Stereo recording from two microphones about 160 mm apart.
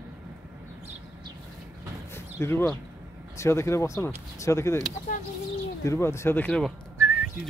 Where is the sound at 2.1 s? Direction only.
15° left (ahead or behind).